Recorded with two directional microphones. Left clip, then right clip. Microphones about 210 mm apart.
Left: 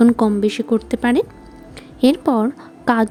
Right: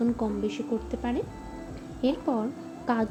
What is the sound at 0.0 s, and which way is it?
A woman's voice, 55° left (ahead or behind).